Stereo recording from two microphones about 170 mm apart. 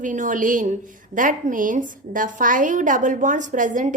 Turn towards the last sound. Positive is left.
turn(degrees=-50)  # may be behind; listen again after turning